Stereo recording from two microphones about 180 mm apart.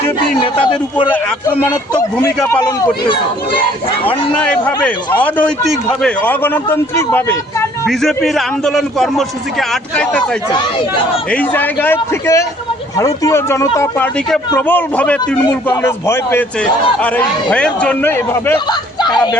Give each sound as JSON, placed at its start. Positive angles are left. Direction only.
{"t": 0.5, "sound": "a man's voice", "side_deg": 25}
{"t": 1.1, "sound": "speech", "side_deg": 10}
{"t": 5.2, "sound": "speech", "side_deg": 5}
{"t": 7.9, "sound": "a man's voice", "side_deg": 0}
{"t": 11.3, "sound": "speech", "side_deg": 10}
{"t": 18.7, "sound": "speech", "side_deg": 25}